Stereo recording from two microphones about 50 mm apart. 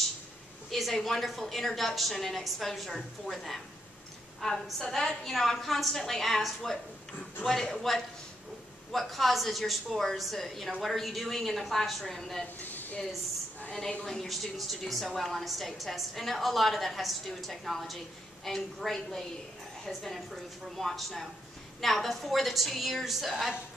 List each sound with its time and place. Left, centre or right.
0.7 s a woman's voice: centre
12.5 s a sound: left
14.0 s a woman's voice: centre